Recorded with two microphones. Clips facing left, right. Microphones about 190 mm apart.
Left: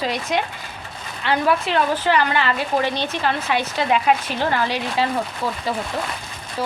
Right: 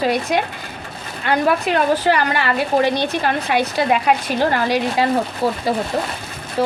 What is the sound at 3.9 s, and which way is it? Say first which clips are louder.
Speech: left 1 dB; 10° right (ahead or behind).